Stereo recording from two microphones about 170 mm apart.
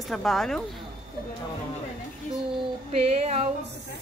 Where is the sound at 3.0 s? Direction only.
35° right (ahead or behind).